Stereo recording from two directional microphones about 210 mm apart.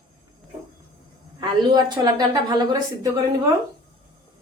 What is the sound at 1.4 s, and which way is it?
A woman's voice, 20° right (ahead or behind).